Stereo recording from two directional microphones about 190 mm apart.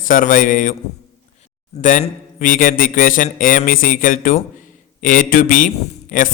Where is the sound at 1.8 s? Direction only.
45° left (ahead or behind).